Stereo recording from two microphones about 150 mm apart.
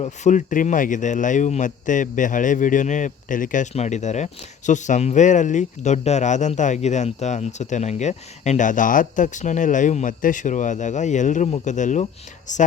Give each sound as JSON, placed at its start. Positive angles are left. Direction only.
{"t": 0.0, "sound": "a man's voice", "side_deg": 50}